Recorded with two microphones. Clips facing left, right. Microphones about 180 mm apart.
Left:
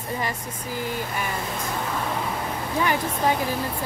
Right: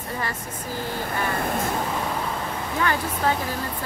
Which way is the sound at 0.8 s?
15° left (ahead or behind).